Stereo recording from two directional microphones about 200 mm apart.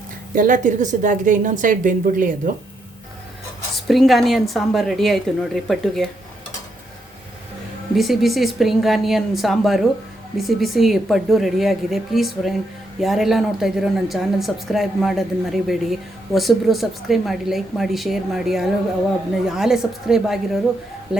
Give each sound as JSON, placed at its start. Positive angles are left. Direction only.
{"t": 0.3, "sound": "a woman's voice", "side_deg": -40}
{"t": 3.8, "sound": "speech", "side_deg": 0}
{"t": 7.9, "sound": "speech", "side_deg": 0}